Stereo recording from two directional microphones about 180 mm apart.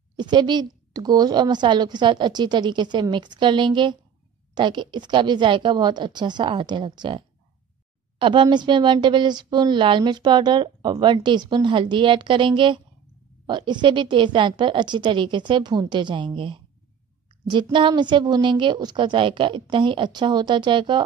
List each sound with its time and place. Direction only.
0.2 s speech: 25° right (ahead or behind)